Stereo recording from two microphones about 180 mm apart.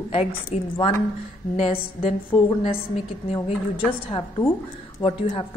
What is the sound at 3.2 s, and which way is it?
A woman's voice, 35° left (ahead or behind).